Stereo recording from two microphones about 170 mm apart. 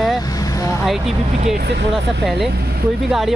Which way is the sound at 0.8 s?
Centre (ahead or behind).